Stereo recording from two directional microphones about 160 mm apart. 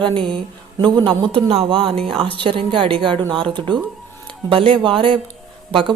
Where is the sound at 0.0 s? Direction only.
30° right (ahead or behind).